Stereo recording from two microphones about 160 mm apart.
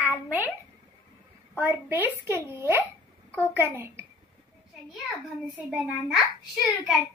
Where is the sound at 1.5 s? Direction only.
15° right (ahead or behind).